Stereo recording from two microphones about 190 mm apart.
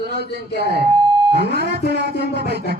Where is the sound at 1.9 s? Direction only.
60° right (ahead or behind).